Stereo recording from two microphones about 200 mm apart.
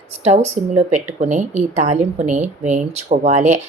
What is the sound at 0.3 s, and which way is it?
Speech, 35° right (ahead or behind).